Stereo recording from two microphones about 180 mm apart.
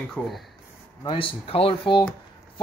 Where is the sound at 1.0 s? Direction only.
30° left (ahead or behind).